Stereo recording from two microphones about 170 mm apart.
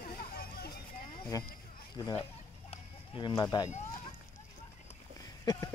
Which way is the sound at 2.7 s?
25° left (ahead or behind).